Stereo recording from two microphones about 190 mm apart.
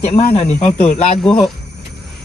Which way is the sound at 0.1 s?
35° left (ahead or behind).